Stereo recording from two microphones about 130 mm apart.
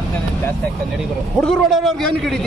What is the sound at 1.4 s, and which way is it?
Speech, centre (ahead or behind).